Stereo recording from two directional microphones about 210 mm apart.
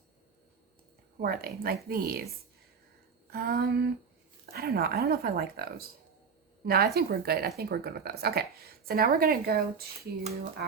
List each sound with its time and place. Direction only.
1.2 s a woman's voice: 45° right (ahead or behind)
3.3 s a woman's voice: 45° right (ahead or behind)